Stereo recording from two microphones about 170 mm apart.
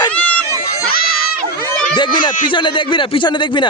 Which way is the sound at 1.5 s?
55° left (ahead or behind).